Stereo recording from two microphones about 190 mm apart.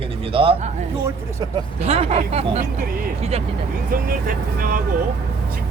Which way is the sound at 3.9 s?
50° right (ahead or behind).